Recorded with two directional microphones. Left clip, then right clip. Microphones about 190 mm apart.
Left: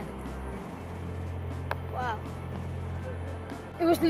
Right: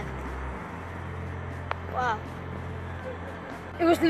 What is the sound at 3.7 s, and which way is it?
Speech, centre (ahead or behind).